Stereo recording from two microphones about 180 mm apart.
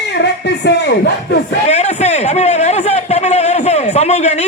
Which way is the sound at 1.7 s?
35° left (ahead or behind).